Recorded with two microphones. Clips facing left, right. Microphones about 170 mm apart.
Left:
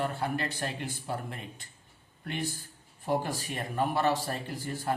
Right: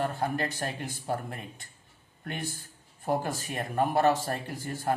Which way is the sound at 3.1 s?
50° right (ahead or behind).